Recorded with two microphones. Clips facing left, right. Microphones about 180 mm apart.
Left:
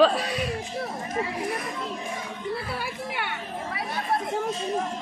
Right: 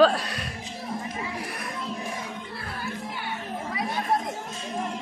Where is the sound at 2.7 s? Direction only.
70° left (ahead or behind).